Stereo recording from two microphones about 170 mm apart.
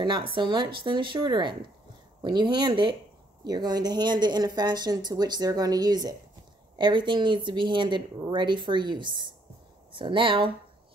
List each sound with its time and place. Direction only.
0.0 s speech: 30° right (ahead or behind)